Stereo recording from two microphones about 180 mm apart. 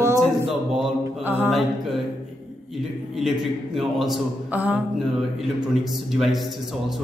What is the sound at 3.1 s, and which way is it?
A man's voice, centre (ahead or behind).